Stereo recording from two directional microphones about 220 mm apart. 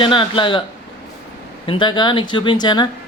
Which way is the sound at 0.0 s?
20° left (ahead or behind).